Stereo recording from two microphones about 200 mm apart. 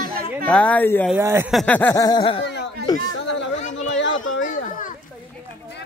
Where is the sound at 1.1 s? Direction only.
10° right (ahead or behind).